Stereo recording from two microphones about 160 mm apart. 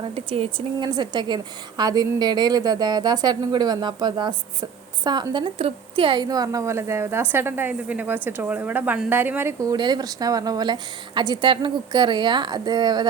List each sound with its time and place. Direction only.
0.0 s a woman's voice: 35° right (ahead or behind)